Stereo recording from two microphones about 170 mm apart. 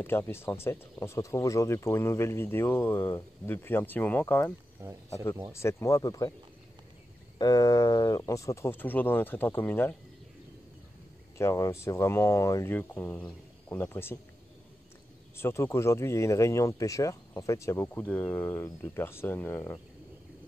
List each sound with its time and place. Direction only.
0.0 s speech: 15° left (ahead or behind)
4.8 s speech: 15° right (ahead or behind)
5.5 s speech: 15° left (ahead or behind)
7.3 s speech: 20° left (ahead or behind)
11.3 s speech: 15° left (ahead or behind)
15.3 s speech: 15° left (ahead or behind)